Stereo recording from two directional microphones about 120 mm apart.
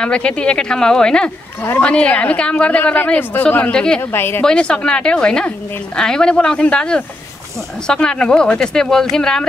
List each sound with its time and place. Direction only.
0.0 s speech: 10° left (ahead or behind)
4.1 s speech: 20° left (ahead or behind)
4.5 s speech: 10° left (ahead or behind)